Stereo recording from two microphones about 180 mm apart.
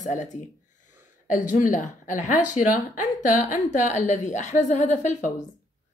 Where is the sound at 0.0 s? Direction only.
40° left (ahead or behind).